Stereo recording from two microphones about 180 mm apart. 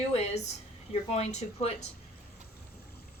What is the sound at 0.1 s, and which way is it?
Speech, 35° left (ahead or behind).